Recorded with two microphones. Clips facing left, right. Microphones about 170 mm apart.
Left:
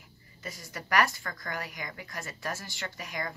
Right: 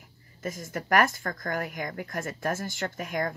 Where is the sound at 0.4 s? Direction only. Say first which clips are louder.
Right 8 dB; 50° right (ahead or behind).